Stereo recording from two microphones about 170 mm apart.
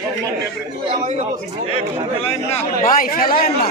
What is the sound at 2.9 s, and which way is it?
Speech, 55° left (ahead or behind).